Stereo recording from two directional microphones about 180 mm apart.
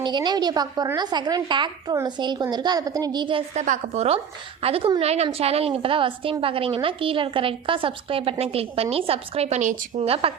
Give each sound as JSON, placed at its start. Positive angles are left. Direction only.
{"t": 0.0, "sound": "a woman's voice", "side_deg": -25}
{"t": 3.5, "sound": "a woman's voice", "side_deg": -40}